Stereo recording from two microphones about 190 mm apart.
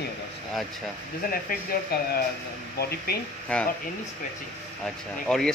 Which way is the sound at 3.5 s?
5° left (ahead or behind).